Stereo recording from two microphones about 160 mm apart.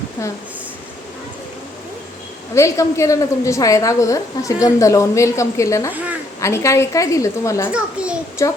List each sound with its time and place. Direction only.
2.6 s a woman's voice: 20° left (ahead or behind)
7.7 s a child's voice: 5° right (ahead or behind)
8.4 s a woman's voice: 20° left (ahead or behind)